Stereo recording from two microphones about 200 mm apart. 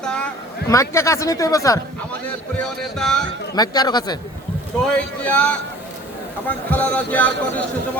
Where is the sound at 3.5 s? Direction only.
20° left (ahead or behind).